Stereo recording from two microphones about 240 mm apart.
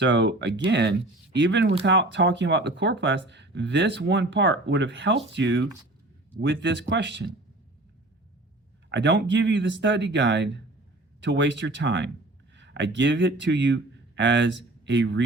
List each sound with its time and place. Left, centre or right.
0.0 s speech: right
8.9 s speech: right